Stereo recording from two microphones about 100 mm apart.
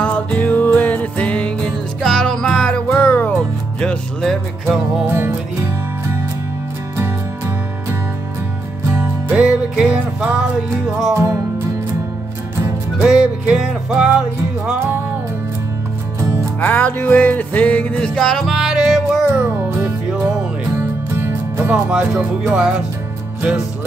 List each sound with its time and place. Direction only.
0.0 s music: 15° left (ahead or behind)
5.0 s music: 25° right (ahead or behind)
8.9 s music: 20° right (ahead or behind)
9.4 s music: 10° right (ahead or behind)
13.0 s music: 5° right (ahead or behind)
16.6 s music: 15° left (ahead or behind); by 19.2 s 5° right (ahead or behind)
20.7 s music: 20° right (ahead or behind)